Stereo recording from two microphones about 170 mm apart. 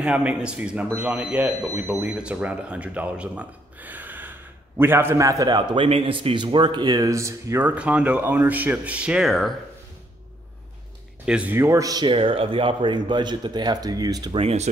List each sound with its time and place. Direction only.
0.0 s speech: 5° right (ahead or behind)
11.2 s speech: 10° right (ahead or behind); by 14.7 s 35° right (ahead or behind)